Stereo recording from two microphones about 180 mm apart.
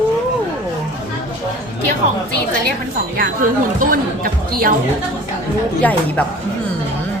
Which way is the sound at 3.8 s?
50° right (ahead or behind).